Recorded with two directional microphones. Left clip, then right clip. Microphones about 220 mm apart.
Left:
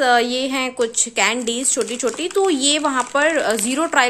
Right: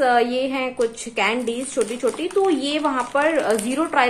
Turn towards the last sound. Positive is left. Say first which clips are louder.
# left 2 dB
turn(degrees=40)  # may be behind; listen again after turning